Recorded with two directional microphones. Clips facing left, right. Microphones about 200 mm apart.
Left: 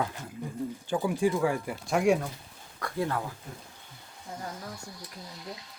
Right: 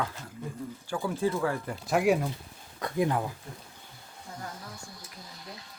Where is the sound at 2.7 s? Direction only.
20° right (ahead or behind).